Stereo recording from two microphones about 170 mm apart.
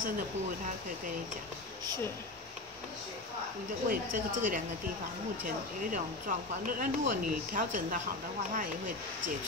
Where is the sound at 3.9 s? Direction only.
50° right (ahead or behind).